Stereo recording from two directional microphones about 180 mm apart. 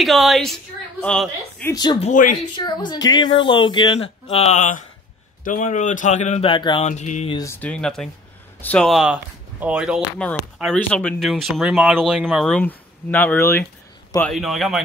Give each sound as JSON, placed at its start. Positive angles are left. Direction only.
{"t": 0.0, "sound": "speech", "side_deg": 0}
{"t": 1.7, "sound": "speech", "side_deg": 25}
{"t": 2.0, "sound": "speech", "side_deg": 45}
{"t": 2.5, "sound": "speech", "side_deg": 25}
{"t": 6.5, "sound": "speech", "side_deg": 25}
{"t": 6.9, "sound": "speech", "side_deg": 40}
{"t": 7.3, "sound": "speech", "side_deg": 15}
{"t": 14.2, "sound": "speech", "side_deg": 0}